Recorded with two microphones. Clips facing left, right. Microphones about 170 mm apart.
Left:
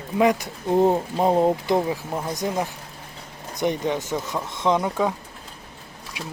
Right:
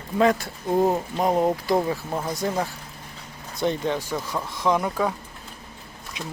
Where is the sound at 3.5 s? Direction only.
20° left (ahead or behind).